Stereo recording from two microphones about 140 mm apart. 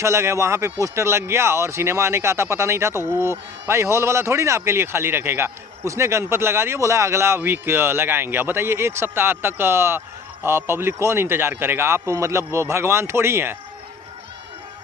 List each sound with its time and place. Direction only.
0.0 s a man's voice: 20° right (ahead or behind)